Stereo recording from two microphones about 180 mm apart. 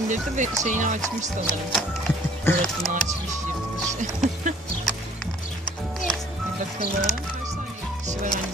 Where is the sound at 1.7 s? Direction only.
10° left (ahead or behind).